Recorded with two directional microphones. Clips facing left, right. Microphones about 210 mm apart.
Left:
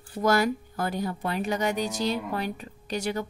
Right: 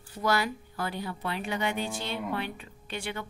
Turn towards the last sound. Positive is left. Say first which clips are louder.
# left 7 dB
turn(degrees=40)  # may be behind; listen again after turning